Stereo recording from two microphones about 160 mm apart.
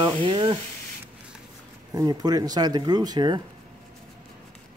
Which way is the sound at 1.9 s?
25° right (ahead or behind).